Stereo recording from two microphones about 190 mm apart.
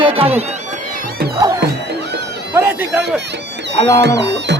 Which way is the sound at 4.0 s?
65° right (ahead or behind).